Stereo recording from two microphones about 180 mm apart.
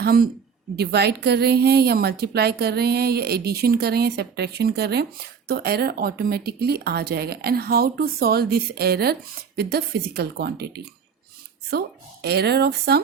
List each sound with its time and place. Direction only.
0.0 s a woman's voice: 60° right (ahead or behind)
12.2 s a woman's voice: 65° right (ahead or behind)